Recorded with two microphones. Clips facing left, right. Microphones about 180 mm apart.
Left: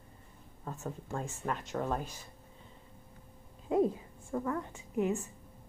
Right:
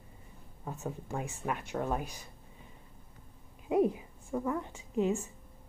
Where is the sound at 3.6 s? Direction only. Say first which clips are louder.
Right 1 dB; 15° right (ahead or behind).